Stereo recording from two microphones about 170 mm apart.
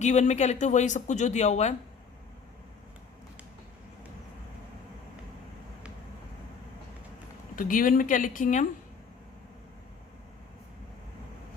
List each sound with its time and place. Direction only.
0.0 s speech: 45° left (ahead or behind)
7.5 s speech: 55° left (ahead or behind)